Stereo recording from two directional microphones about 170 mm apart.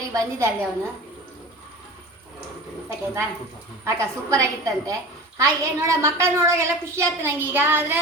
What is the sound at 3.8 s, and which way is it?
A woman's voice, 15° right (ahead or behind).